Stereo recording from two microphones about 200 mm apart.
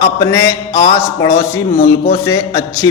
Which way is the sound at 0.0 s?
15° left (ahead or behind).